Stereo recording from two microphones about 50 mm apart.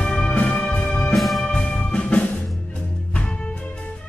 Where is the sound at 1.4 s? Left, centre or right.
Centre.